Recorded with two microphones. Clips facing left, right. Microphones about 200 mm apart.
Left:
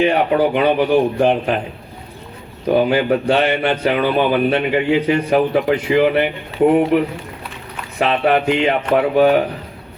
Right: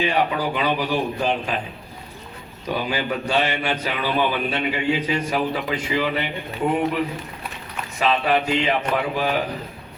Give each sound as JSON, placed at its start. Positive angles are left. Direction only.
{"t": 0.0, "sound": "speech", "side_deg": 60}
{"t": 2.6, "sound": "speech", "side_deg": 60}
{"t": 7.9, "sound": "speech", "side_deg": 60}